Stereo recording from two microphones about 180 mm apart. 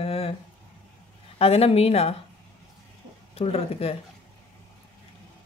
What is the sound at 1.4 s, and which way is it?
Speech, 35° left (ahead or behind).